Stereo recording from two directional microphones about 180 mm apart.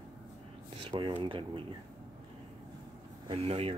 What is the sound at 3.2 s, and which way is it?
Speech, 30° right (ahead or behind).